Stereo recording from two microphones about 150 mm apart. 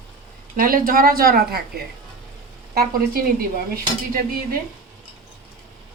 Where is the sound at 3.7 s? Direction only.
85° right.